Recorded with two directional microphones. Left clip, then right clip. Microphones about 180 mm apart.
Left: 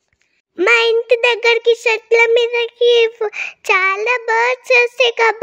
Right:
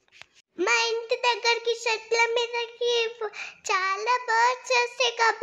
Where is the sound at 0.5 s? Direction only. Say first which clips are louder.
Left 12 dB; 50° left (ahead or behind).